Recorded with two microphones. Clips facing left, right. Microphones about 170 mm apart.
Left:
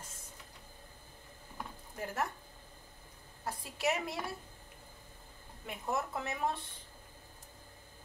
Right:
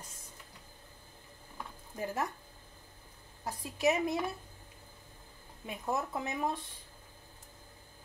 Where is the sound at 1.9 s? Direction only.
15° right (ahead or behind).